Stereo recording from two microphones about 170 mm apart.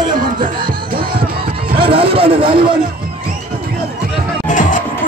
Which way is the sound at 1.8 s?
30° right (ahead or behind).